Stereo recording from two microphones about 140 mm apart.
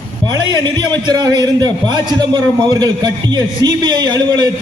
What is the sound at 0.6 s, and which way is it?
A man's voice, 30° right (ahead or behind).